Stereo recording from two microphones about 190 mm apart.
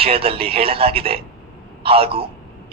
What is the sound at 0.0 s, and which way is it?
A woman's voice, 30° right (ahead or behind).